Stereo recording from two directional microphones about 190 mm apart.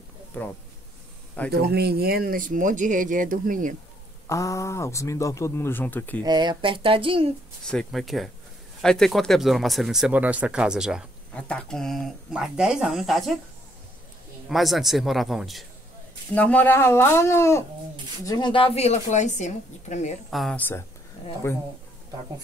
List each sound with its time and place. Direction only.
0.3 s speech: 10° left (ahead or behind)
1.5 s speech: 60° right (ahead or behind)
4.3 s speech: 15° left (ahead or behind)
6.2 s speech: 20° right (ahead or behind)
7.6 s speech: centre (ahead or behind)
14.5 s speech: centre (ahead or behind); by 20.2 s 40° left (ahead or behind)
20.2 s speech: centre (ahead or behind)